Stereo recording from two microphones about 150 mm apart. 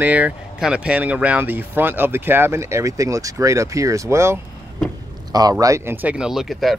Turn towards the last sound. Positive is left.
turn(degrees=0)  # may be behind; listen again after turning